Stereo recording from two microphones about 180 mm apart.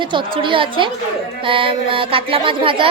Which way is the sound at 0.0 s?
25° right (ahead or behind).